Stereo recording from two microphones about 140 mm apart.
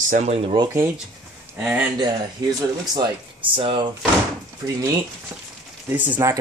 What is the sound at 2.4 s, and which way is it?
Speech, 30° right (ahead or behind).